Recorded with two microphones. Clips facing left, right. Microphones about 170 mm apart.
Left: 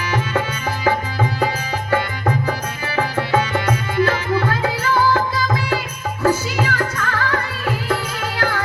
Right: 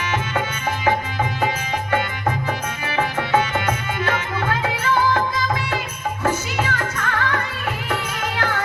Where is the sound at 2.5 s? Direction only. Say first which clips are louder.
Left 2 dB; 35° left (ahead or behind).